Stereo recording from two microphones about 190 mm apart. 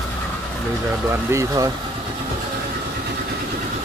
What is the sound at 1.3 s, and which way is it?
Speech, 15° right (ahead or behind).